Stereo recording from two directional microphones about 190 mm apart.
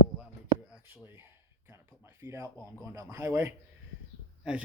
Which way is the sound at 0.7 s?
10° right (ahead or behind).